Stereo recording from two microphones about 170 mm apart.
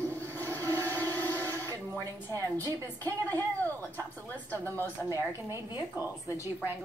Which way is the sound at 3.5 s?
10° left (ahead or behind).